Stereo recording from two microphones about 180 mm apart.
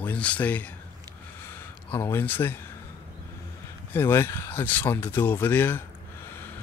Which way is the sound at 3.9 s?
10° left (ahead or behind).